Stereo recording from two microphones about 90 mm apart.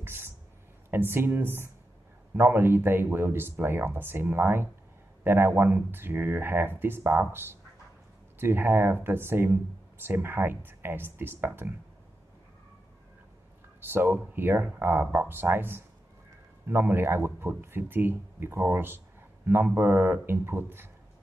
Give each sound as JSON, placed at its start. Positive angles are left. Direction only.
{"t": 0.0, "sound": "a sound", "side_deg": -25}
{"t": 0.8, "sound": "speech", "side_deg": -25}
{"t": 13.7, "sound": "speech", "side_deg": -25}